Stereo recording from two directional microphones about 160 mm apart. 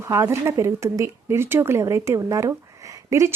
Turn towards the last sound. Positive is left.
turn(degrees=-20)  # may be behind; listen again after turning